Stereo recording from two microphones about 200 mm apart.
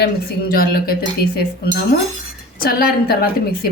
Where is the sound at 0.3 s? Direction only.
50° left (ahead or behind).